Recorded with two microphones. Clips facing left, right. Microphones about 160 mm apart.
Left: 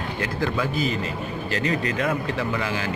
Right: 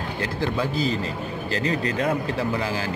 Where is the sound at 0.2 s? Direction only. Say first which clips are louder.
Even; 30° right (ahead or behind).